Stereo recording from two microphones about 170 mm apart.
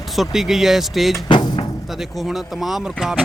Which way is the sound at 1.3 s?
25° left (ahead or behind).